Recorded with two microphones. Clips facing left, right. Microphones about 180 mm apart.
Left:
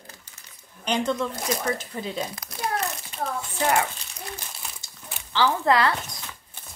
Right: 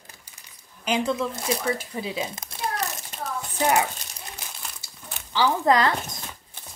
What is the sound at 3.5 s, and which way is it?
Speech, 15° right (ahead or behind).